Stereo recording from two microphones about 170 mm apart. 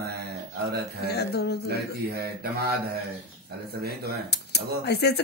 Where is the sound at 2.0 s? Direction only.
65° right (ahead or behind).